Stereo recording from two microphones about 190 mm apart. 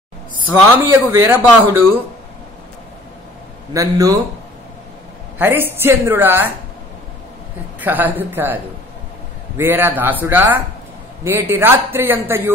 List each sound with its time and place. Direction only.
0.5 s a man's voice: 10° right (ahead or behind)
3.7 s a man's voice: 15° right (ahead or behind)
5.4 s a man's voice: 10° right (ahead or behind)
7.8 s a man's voice: 10° right (ahead or behind)
9.6 s a man's voice: 10° right (ahead or behind)